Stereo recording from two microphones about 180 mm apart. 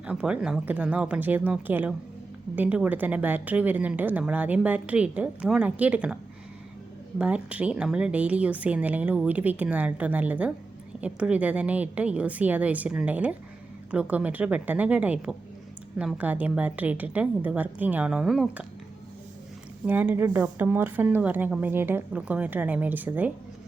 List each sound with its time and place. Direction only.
0.0 s speech: 5° right (ahead or behind)
7.2 s speech: 5° right (ahead or behind)
19.8 s speech: 10° right (ahead or behind)